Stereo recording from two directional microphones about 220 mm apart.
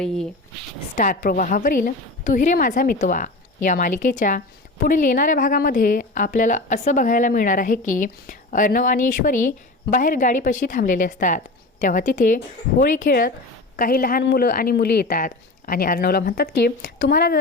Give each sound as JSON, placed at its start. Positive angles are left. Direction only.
{"t": 0.0, "sound": "speech", "side_deg": 0}
{"t": 0.9, "sound": "a woman's voice", "side_deg": 35}